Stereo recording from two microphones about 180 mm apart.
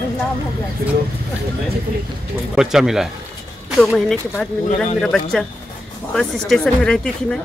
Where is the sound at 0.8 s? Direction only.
60° right (ahead or behind).